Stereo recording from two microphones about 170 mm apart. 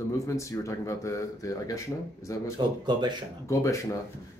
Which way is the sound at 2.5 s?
25° right (ahead or behind).